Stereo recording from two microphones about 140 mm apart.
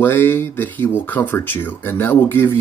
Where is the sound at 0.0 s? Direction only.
15° left (ahead or behind).